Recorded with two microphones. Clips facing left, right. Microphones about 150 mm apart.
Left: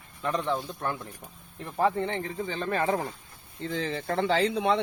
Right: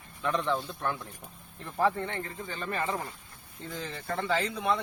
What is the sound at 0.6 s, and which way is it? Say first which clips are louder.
Speech: left 1 dB; 15° left (ahead or behind).